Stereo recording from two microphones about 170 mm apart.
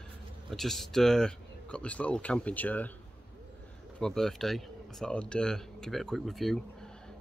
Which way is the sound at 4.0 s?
5° left (ahead or behind).